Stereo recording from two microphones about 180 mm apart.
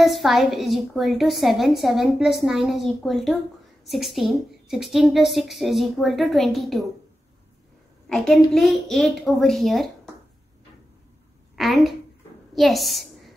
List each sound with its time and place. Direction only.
0.0 s a woman's voice: centre (ahead or behind)
8.5 s a woman's voice: centre (ahead or behind)
11.5 s a woman's voice: centre (ahead or behind)